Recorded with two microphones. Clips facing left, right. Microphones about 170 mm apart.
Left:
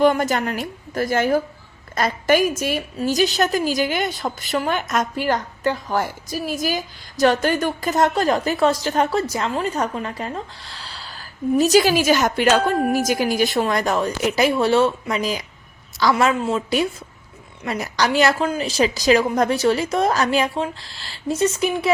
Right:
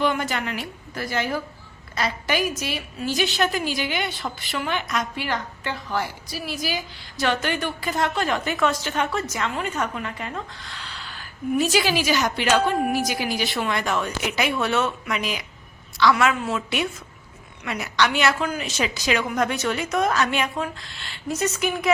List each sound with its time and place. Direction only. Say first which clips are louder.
0.0 s a woman's voice: left 7 dB; 45° left (ahead or behind)